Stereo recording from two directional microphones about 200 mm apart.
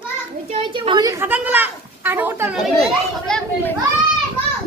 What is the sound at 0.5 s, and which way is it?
A woman's voice, 25° right (ahead or behind).